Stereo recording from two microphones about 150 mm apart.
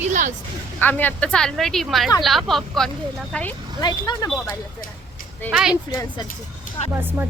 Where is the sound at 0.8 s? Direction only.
10° left (ahead or behind).